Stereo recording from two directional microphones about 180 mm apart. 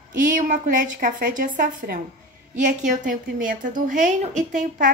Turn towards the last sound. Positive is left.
turn(degrees=-45)  # may be behind; listen again after turning